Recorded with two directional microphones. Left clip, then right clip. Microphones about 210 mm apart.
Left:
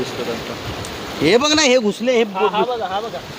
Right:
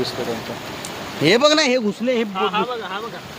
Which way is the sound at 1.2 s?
30° right (ahead or behind).